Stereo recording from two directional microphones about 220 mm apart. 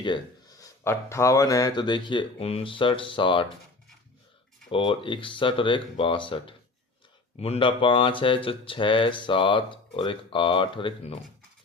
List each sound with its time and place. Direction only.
0.6 s speech: 10° left (ahead or behind)
4.7 s speech: 25° left (ahead or behind)